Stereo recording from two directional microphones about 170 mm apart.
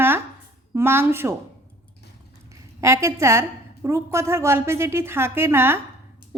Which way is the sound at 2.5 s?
15° right (ahead or behind).